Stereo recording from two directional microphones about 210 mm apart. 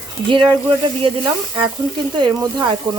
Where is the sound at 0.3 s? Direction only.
20° right (ahead or behind).